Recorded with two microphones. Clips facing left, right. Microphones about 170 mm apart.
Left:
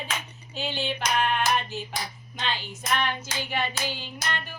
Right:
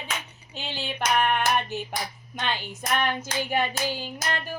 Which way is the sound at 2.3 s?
55° right (ahead or behind).